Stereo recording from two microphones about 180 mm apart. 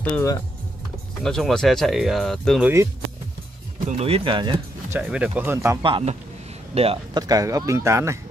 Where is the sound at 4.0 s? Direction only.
30° right (ahead or behind).